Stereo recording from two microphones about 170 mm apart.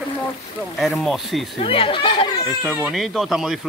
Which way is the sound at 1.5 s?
35° left (ahead or behind).